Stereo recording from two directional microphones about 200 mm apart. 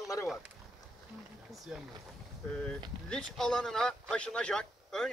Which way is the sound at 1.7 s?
5° right (ahead or behind).